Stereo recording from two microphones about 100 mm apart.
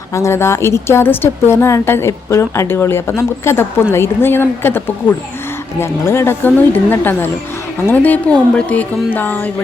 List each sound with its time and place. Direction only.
0.1 s a woman's voice: 30° left (ahead or behind)